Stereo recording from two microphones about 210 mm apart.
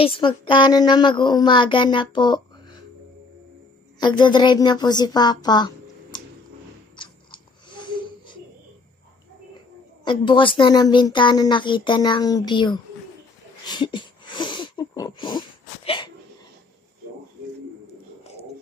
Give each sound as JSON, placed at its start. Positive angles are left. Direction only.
{"t": 0.0, "sound": "speech", "side_deg": 25}
{"t": 4.0, "sound": "speech", "side_deg": 20}
{"t": 6.1, "sound": "a sound", "side_deg": 20}
{"t": 7.0, "sound": "chewing", "side_deg": 20}
{"t": 10.0, "sound": "speech", "side_deg": 25}
{"t": 13.7, "sound": "a sound", "side_deg": 20}